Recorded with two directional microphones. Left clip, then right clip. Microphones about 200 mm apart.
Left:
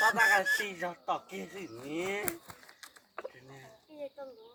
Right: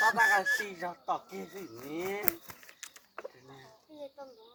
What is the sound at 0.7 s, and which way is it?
Speech, 15° left (ahead or behind).